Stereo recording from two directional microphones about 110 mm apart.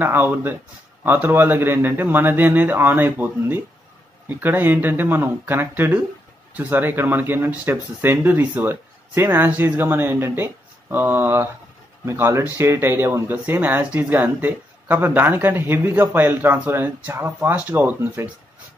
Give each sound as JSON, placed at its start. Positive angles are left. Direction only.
{"t": 0.0, "sound": "speech", "side_deg": -15}